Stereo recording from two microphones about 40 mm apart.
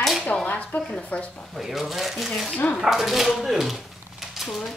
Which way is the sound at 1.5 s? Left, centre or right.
Centre.